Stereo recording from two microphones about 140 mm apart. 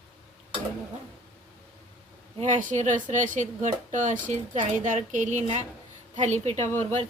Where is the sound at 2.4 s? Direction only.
65° right (ahead or behind).